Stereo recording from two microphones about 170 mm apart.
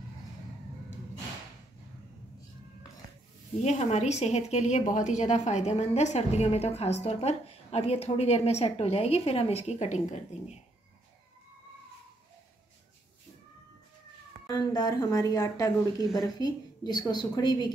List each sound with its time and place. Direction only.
3.6 s a woman's voice: 40° left (ahead or behind)
14.5 s a woman's voice: 25° left (ahead or behind)